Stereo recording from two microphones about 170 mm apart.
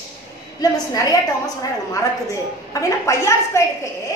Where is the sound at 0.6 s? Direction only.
20° left (ahead or behind).